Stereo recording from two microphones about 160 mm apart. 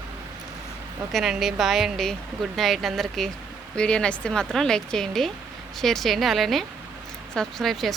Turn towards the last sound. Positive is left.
turn(degrees=0)  # may be behind; listen again after turning